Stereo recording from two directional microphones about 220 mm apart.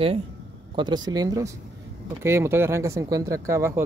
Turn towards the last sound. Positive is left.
turn(degrees=-10)  # may be behind; listen again after turning